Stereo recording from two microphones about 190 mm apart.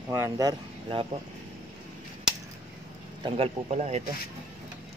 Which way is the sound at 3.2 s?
35° right (ahead or behind).